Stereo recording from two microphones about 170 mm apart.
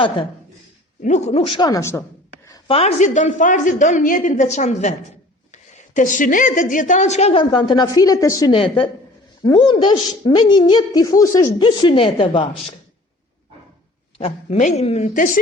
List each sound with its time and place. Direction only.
1.0 s a woman's voice: 40° left (ahead or behind); by 2.0 s 20° left (ahead or behind)
2.6 s a woman's voice: 35° left (ahead or behind)
14.2 s a woman's voice: 35° left (ahead or behind)